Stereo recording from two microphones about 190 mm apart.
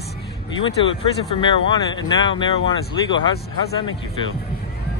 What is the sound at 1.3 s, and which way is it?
Speech, 25° left (ahead or behind).